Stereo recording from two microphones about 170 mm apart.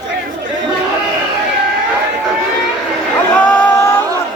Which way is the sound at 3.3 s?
10° left (ahead or behind).